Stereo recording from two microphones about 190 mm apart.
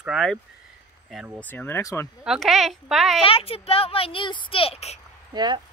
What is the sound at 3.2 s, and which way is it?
Speech, 30° left (ahead or behind).